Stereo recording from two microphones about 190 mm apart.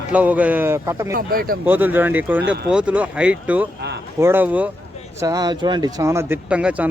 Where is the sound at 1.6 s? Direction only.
10° right (ahead or behind).